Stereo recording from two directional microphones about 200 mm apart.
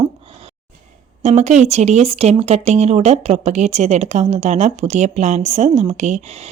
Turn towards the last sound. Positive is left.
turn(degrees=-35)  # may be behind; listen again after turning